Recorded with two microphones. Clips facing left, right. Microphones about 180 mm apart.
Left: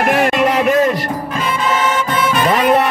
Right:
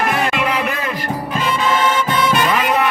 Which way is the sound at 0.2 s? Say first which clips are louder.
Left 5 dB; 45° left (ahead or behind).